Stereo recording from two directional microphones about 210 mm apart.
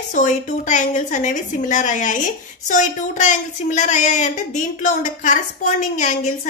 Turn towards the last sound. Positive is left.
turn(degrees=40)  # may be behind; listen again after turning